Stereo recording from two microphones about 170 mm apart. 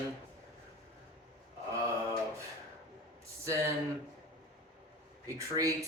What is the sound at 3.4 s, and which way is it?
Speech, 15° right (ahead or behind).